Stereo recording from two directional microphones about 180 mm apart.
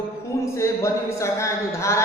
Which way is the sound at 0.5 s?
15° left (ahead or behind).